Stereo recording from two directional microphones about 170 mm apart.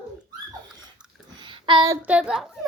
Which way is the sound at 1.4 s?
30° right (ahead or behind).